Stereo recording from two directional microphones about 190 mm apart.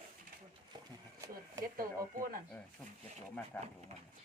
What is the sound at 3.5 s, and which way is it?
Speech, 5° left (ahead or behind).